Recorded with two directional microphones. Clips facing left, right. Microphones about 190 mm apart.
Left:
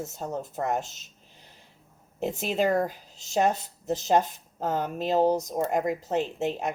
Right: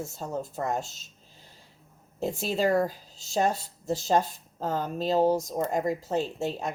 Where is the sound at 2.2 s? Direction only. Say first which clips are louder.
Left 1 dB; 20° left (ahead or behind).